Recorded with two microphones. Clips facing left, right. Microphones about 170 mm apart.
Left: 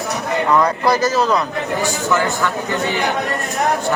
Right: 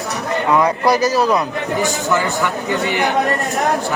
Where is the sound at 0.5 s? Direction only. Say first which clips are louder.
Right 2 dB; 10° right (ahead or behind).